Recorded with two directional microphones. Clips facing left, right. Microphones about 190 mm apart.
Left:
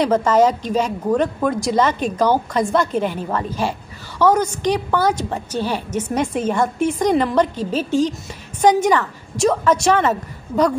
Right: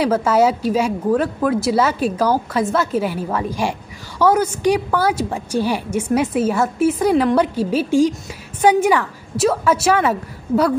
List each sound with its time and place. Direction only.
0.0 s a woman's voice: 5° right (ahead or behind)